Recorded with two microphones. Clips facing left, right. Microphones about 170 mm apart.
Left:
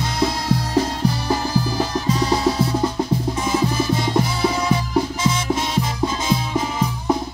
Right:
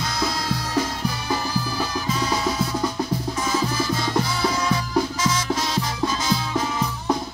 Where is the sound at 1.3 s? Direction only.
30° left (ahead or behind).